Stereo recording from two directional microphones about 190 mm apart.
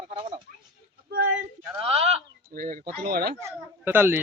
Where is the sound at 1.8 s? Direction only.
30° right (ahead or behind).